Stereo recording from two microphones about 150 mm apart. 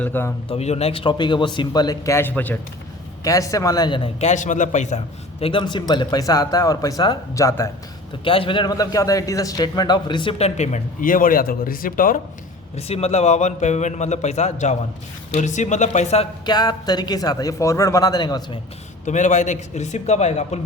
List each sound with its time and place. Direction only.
0.0 s a man's voice: 15° left (ahead or behind)
0.4 s a man's voice: 40° left (ahead or behind); by 2.6 s 10° left (ahead or behind)
3.2 s a man's voice: 20° left (ahead or behind)
4.2 s a man's voice: 55° left (ahead or behind); by 7.7 s 20° left (ahead or behind)
8.2 s a man's voice: 35° left (ahead or behind); by 12.2 s 70° left (ahead or behind)
12.7 s a man's voice: 45° left (ahead or behind)
16.5 s a man's voice: 25° left (ahead or behind)
19.0 s a man's voice: 55° left (ahead or behind)